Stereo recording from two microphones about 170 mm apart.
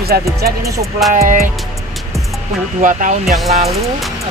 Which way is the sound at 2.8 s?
50° right (ahead or behind).